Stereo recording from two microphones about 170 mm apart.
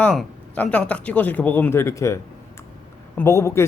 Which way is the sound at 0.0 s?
5° left (ahead or behind).